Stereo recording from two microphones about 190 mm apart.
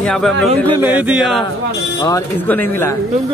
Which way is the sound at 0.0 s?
5° left (ahead or behind).